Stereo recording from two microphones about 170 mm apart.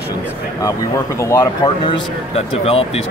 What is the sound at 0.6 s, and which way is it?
Speech, 20° left (ahead or behind).